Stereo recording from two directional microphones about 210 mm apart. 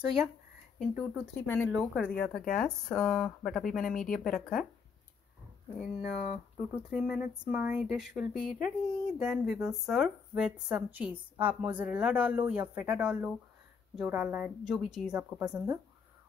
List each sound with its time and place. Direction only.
0.0 s speech: 5° right (ahead or behind)
6.0 s speech: 35° left (ahead or behind)
6.7 s speech: 5° right (ahead or behind)